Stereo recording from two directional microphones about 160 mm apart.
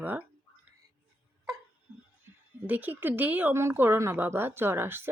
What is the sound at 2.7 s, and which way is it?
Speech, 10° right (ahead or behind).